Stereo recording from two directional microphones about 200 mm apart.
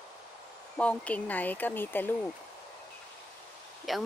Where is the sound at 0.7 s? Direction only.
5° left (ahead or behind).